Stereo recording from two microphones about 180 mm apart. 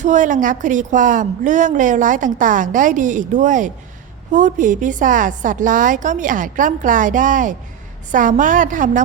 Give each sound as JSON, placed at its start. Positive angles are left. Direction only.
{"t": 0.0, "sound": "a woman's voice", "side_deg": -45}